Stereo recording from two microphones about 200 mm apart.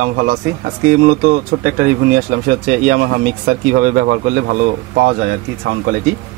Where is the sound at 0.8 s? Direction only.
45° right (ahead or behind).